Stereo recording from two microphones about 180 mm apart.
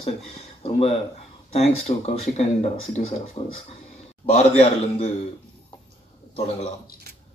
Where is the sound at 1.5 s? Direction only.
35° left (ahead or behind).